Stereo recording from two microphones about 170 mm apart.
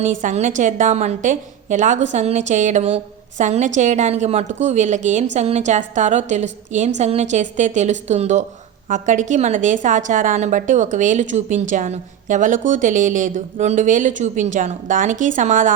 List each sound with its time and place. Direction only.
0.2 s a woman's voice: 45° right (ahead or behind)